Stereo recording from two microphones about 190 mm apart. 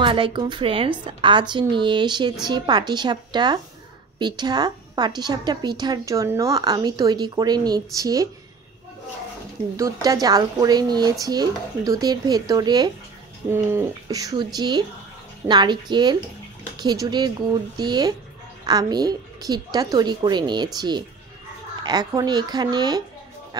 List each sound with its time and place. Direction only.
0.0 s a woman's voice: 25° right (ahead or behind)
9.8 s a woman's voice: 20° right (ahead or behind)